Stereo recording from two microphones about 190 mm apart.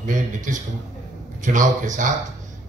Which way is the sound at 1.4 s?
40° right (ahead or behind).